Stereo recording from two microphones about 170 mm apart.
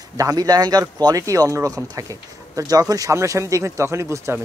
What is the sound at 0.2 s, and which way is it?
Speech, 20° right (ahead or behind).